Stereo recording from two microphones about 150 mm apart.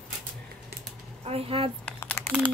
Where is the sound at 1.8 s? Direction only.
15° left (ahead or behind).